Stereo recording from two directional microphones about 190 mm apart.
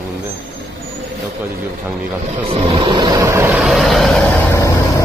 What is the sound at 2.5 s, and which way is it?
Vehicle, 25° right (ahead or behind).